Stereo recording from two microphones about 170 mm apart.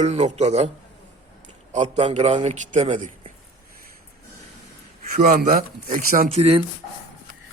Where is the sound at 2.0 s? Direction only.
35° right (ahead or behind).